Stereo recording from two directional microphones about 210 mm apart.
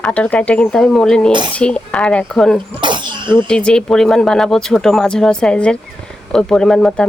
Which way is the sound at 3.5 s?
5° left (ahead or behind).